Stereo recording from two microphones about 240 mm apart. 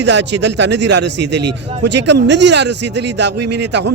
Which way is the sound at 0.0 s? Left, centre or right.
Right.